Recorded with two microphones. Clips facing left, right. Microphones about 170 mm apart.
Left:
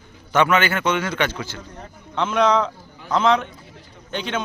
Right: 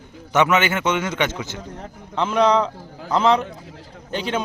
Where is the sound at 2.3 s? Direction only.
35° right (ahead or behind).